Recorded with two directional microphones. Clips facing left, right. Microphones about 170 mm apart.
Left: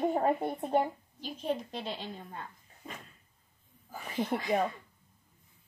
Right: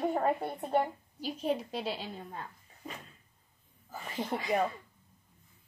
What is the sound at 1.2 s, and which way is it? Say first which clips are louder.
Speech: right 2 dB; 10° right (ahead or behind).